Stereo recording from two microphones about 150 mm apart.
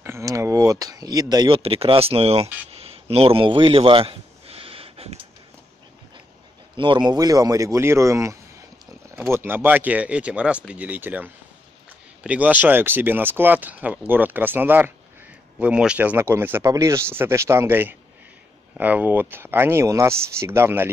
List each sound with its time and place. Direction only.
0.0 s a sound: 20° right (ahead or behind)
1.6 s speech: 40° right (ahead or behind)
6.8 s speech: 30° right (ahead or behind); by 20.9 s 15° right (ahead or behind)